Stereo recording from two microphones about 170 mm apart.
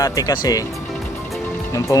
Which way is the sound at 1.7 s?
20° left (ahead or behind).